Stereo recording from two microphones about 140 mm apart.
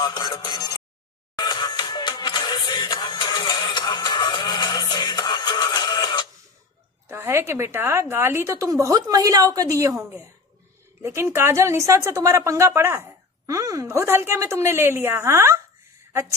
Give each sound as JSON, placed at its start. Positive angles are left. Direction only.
{"t": 0.0, "sound": "a sound", "side_deg": 30}
{"t": 1.3, "sound": "music", "side_deg": 30}
{"t": 7.1, "sound": "a woman's voice", "side_deg": -20}
{"t": 11.0, "sound": "a woman's voice", "side_deg": -20}